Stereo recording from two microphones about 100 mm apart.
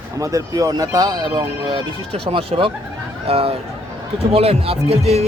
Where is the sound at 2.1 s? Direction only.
75° right (ahead or behind); by 5.2 s 90° right.